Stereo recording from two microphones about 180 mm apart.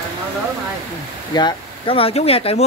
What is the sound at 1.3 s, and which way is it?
Speech, 25° left (ahead or behind).